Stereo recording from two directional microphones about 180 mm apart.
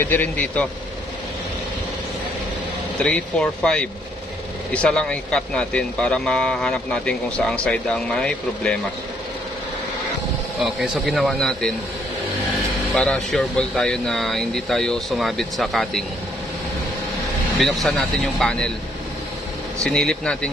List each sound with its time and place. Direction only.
0.0 s speech: 10° left (ahead or behind)
3.0 s speech: 5° left (ahead or behind)
10.6 s speech: centre (ahead or behind)
12.9 s speech: 5° left (ahead or behind)
17.6 s speech: centre (ahead or behind)
19.8 s speech: 5° left (ahead or behind)